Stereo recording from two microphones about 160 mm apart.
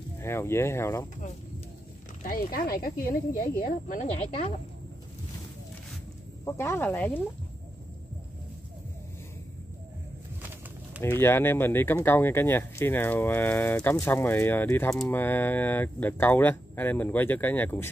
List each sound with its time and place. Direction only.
0.2 s speech: 15° left (ahead or behind)
2.2 s speech: 65° left (ahead or behind)
3.6 s speech: 50° left (ahead or behind)
4.3 s speech: 35° left (ahead or behind)
6.4 s speech: 15° left (ahead or behind)
11.0 s speech: 15° left (ahead or behind)